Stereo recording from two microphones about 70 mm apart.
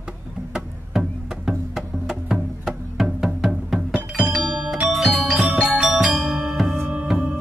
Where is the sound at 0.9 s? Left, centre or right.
Centre.